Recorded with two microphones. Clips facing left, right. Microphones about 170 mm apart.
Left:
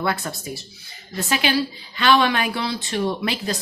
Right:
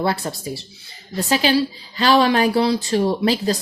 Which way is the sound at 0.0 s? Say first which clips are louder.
Right 3 dB; 35° right (ahead or behind).